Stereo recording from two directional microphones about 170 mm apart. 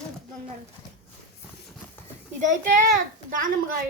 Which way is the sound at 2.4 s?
45° right (ahead or behind).